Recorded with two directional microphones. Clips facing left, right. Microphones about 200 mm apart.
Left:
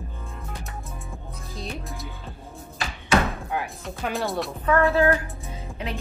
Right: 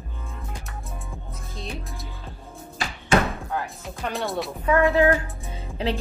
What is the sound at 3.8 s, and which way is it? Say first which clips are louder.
Music: left 1 dB; centre (ahead or behind).